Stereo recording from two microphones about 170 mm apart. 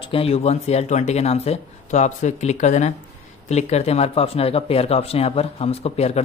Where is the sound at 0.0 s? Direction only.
35° left (ahead or behind).